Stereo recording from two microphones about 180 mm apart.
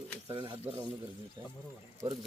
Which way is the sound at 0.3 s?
25° right (ahead or behind).